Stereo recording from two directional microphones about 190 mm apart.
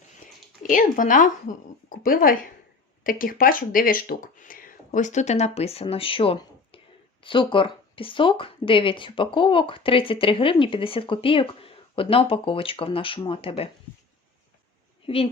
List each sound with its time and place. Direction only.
0.7 s speech: 45° left (ahead or behind); by 13.7 s 30° left (ahead or behind)
15.0 s a woman's voice: 30° left (ahead or behind)